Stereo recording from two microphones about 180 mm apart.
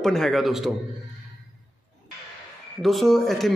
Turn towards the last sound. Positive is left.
turn(degrees=0)  # may be behind; listen again after turning